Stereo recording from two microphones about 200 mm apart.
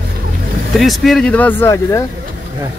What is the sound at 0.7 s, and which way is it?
Speech, centre (ahead or behind).